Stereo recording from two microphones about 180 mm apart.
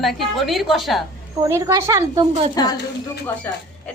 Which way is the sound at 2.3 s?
35° right (ahead or behind).